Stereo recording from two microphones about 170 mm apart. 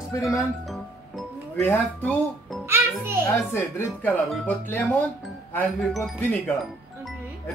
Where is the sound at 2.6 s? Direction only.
15° right (ahead or behind).